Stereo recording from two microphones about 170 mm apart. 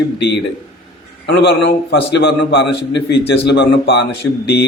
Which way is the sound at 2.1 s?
90° left.